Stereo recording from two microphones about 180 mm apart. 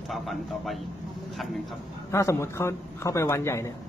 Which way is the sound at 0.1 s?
Centre (ahead or behind).